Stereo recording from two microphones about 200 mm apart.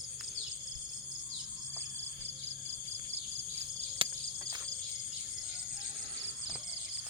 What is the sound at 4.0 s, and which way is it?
Cricket, 25° right (ahead or behind).